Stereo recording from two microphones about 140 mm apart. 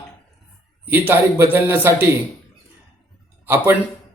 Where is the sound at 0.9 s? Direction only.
15° right (ahead or behind).